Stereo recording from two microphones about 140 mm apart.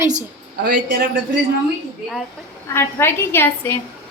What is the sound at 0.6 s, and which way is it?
Speech, 90° right.